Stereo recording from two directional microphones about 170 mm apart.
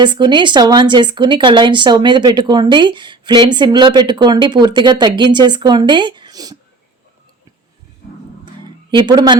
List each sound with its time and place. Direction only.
0.0 s speech: 25° right (ahead or behind)
8.9 s speech: 25° right (ahead or behind)